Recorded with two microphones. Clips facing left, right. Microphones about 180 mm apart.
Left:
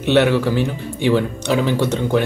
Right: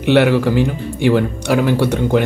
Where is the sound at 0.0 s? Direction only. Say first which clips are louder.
Right 2 dB; 15° right (ahead or behind).